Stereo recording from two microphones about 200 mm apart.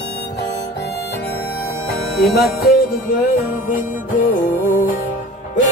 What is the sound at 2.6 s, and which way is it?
Music, 45° left (ahead or behind).